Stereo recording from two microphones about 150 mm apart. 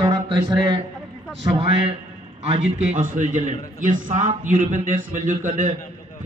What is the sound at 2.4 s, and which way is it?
A man's voice, 45° right (ahead or behind).